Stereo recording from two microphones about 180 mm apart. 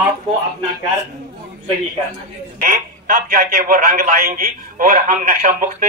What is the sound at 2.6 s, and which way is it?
A man's voice, 45° right (ahead or behind).